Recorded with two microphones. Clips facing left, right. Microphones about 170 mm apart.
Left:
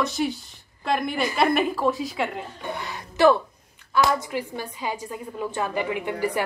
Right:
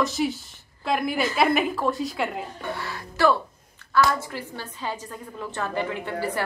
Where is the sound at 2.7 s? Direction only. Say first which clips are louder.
Even; 20° left (ahead or behind).